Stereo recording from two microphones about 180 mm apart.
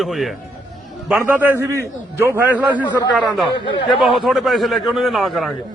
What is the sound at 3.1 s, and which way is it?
A man's voice, centre (ahead or behind).